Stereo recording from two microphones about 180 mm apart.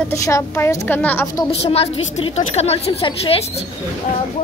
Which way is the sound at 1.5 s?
35° left (ahead or behind).